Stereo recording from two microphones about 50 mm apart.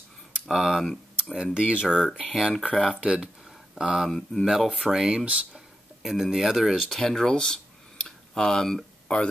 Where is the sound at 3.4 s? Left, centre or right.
Centre.